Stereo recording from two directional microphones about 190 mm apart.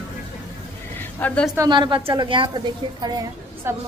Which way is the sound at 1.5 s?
20° right (ahead or behind).